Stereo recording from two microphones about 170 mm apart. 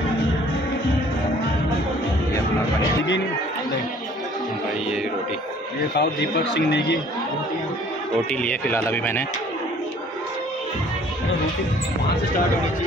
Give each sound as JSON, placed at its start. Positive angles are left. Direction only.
{"t": 5.9, "sound": "a man's voice", "side_deg": 85}
{"t": 8.3, "sound": "speech", "side_deg": 5}